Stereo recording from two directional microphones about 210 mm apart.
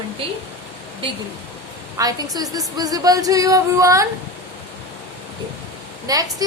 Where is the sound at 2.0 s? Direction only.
20° right (ahead or behind).